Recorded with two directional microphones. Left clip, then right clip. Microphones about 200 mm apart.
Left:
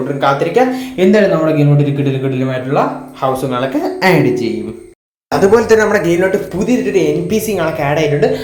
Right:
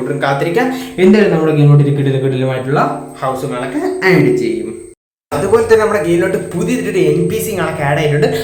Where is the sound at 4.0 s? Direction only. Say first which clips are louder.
Right 1 dB; 20° left (ahead or behind).